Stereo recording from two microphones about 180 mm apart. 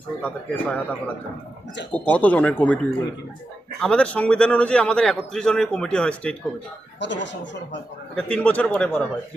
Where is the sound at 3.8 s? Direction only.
5° left (ahead or behind).